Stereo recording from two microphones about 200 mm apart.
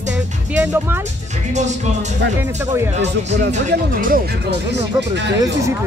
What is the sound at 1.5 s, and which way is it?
Music, 35° right (ahead or behind).